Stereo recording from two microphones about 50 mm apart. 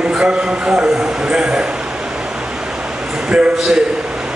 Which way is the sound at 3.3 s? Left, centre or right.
Centre.